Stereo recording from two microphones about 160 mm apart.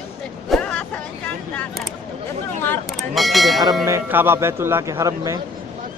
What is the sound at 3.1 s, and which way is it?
Speech, centre (ahead or behind).